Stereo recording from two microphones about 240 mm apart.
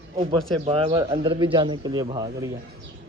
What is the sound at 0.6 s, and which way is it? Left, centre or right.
A man's voice, right.